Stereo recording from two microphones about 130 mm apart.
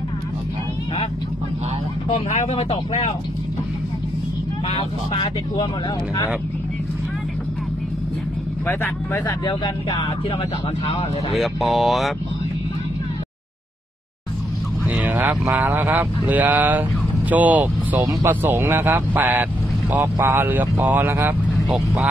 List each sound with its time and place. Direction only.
2.0 s speech: 50° left (ahead or behind)
4.6 s speech: 45° left (ahead or behind)
9.5 s speech: 40° left (ahead or behind)
11.3 s speech: centre (ahead or behind)
14.9 s speech: 10° right (ahead or behind)